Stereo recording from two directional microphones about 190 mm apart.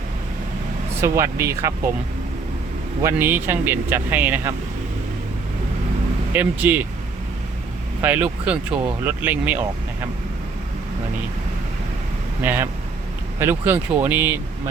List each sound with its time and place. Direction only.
1.0 s speech: 15° right (ahead or behind)
3.0 s speech: 15° right (ahead or behind)
6.3 s speech: 10° right (ahead or behind)
8.0 s speech: 10° right (ahead or behind)
12.4 s speech: 10° right (ahead or behind)